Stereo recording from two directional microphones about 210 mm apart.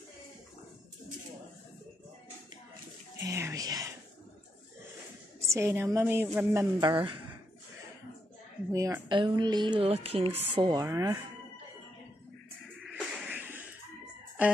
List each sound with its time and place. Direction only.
3.2 s a woman's voice: 15° right (ahead or behind)
5.5 s a woman's voice: 10° right (ahead or behind)
8.7 s a woman's voice: 15° right (ahead or behind)
12.8 s a sound: 10° right (ahead or behind)